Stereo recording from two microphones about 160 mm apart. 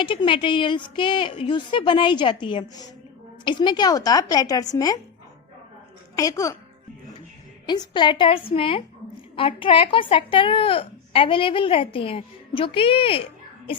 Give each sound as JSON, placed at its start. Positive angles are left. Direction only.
{"t": 0.0, "sound": "a woman's voice", "side_deg": 30}
{"t": 6.1, "sound": "a woman's voice", "side_deg": 20}
{"t": 7.7, "sound": "a woman's voice", "side_deg": 30}